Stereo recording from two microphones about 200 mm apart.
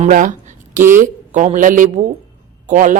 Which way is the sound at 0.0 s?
40° right (ahead or behind).